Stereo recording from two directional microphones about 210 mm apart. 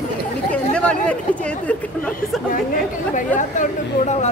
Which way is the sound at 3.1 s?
35° left (ahead or behind).